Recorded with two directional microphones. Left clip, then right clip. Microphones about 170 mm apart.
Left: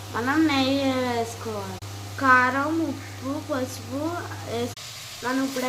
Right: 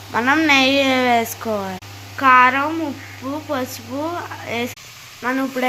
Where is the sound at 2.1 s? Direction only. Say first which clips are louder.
Right 7 dB; 20° right (ahead or behind).